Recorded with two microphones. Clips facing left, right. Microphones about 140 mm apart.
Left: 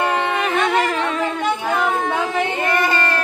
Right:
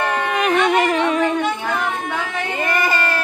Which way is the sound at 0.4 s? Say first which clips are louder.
Right 6 dB; 15° right (ahead or behind).